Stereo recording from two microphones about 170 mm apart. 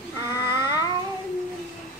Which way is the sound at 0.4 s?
25° left (ahead or behind).